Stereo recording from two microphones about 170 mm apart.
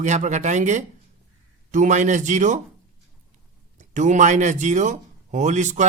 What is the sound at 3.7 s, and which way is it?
Speech, 45° right (ahead or behind).